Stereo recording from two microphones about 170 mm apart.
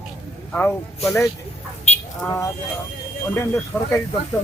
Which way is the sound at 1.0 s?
15° left (ahead or behind).